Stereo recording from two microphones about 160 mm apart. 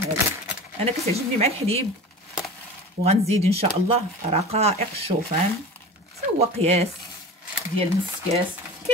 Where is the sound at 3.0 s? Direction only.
40° right (ahead or behind).